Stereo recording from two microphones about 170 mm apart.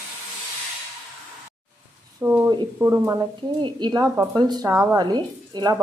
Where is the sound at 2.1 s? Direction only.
15° right (ahead or behind).